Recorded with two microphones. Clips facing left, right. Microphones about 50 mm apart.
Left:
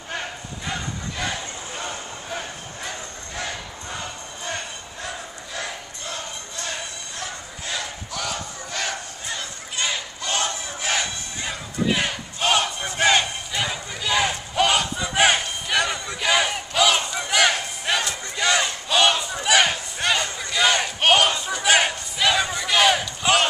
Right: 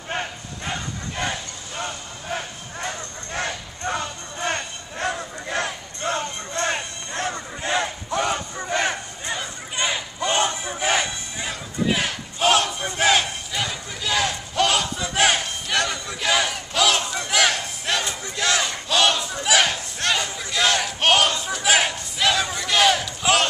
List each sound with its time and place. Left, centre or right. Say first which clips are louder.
1.8 s a sound: right 3 dB; right
3.3 s music: right 3 dB; right
9.4 s crowd: right 1 dB; centre
11.4 s battle cry: even; centre